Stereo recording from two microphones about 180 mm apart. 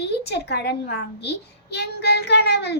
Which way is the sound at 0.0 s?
65° left (ahead or behind).